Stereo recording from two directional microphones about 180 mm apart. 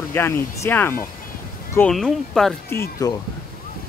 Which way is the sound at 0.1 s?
15° left (ahead or behind).